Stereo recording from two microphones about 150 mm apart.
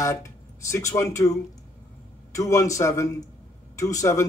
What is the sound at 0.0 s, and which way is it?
Speech, 20° left (ahead or behind).